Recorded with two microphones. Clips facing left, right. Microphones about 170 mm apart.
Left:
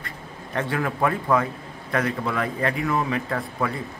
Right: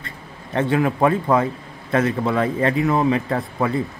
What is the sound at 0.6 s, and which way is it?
A man's voice, 20° right (ahead or behind).